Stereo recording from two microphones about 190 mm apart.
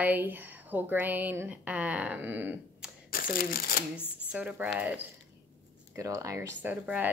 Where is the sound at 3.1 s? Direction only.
50° left (ahead or behind).